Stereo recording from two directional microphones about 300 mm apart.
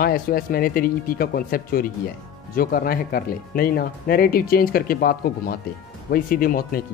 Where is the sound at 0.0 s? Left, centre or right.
Left.